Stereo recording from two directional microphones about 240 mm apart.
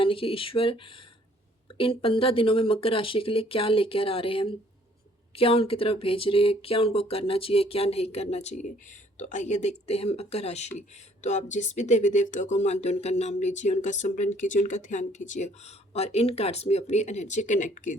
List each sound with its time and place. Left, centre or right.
0.0 s speech: left
1.8 s speech: left